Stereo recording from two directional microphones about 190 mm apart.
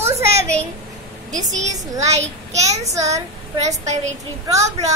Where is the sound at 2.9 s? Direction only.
15° right (ahead or behind).